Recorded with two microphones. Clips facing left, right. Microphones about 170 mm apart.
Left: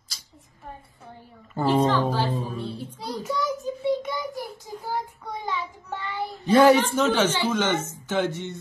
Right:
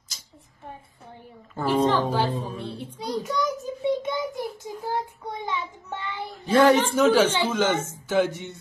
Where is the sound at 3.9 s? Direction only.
20° right (ahead or behind).